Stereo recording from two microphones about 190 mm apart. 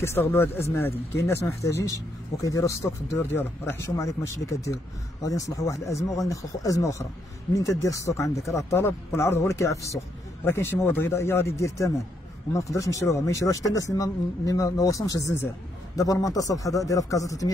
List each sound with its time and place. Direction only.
0.0 s speech: 10° left (ahead or behind)